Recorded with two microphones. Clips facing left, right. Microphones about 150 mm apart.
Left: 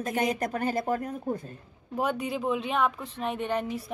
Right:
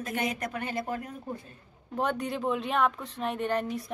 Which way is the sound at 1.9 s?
5° left (ahead or behind).